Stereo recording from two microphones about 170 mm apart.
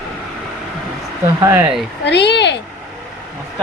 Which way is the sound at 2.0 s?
90° left.